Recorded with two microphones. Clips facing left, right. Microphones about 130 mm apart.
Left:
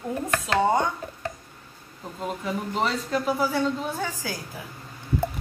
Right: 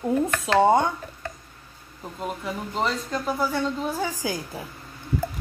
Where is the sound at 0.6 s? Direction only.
25° right (ahead or behind).